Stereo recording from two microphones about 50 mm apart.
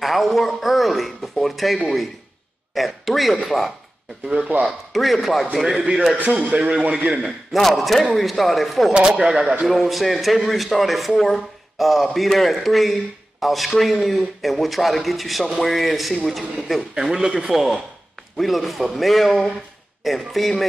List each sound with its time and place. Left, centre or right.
0.0 s a man's voice: centre
5.8 s a man's voice: right
7.5 s a man's voice: centre
8.9 s speech: centre
9.7 s a man's voice: centre
16.9 s a man's voice: centre